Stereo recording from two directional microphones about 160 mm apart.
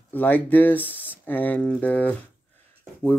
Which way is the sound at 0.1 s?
10° left (ahead or behind).